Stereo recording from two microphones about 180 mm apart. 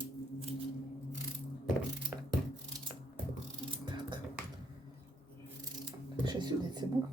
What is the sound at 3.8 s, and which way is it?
Music, 25° right (ahead or behind).